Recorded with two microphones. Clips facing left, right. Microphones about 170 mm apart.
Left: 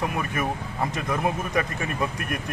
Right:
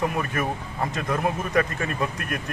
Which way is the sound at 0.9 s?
15° left (ahead or behind).